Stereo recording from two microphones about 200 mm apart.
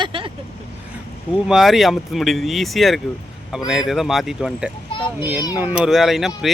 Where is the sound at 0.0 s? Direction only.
25° right (ahead or behind).